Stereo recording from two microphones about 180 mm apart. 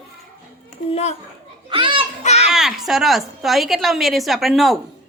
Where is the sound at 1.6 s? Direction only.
25° right (ahead or behind).